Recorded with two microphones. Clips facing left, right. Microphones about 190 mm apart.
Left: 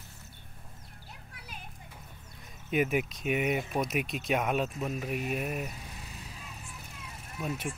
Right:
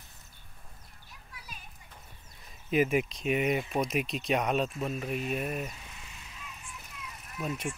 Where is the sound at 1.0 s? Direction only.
60° left (ahead or behind).